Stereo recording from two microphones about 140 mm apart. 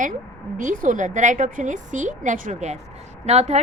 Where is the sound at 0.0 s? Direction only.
65° right (ahead or behind).